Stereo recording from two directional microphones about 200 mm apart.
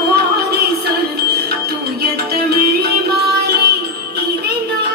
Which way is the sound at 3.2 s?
55° right (ahead or behind).